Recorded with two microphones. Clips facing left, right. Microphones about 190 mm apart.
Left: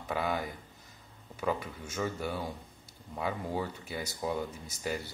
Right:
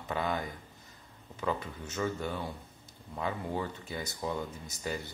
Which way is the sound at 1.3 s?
10° left (ahead or behind).